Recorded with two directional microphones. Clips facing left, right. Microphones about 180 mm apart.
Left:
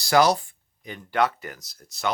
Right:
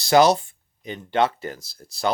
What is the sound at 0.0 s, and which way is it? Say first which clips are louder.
Speech: right 3 dB; 25° right (ahead or behind).